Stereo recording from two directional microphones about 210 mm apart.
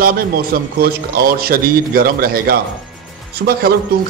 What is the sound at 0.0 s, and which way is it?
A man's voice, 45° right (ahead or behind).